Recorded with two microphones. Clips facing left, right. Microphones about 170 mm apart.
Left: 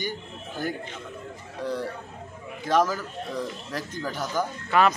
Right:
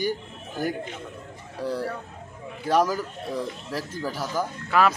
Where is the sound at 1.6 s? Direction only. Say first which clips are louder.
Right 2 dB; 10° right (ahead or behind).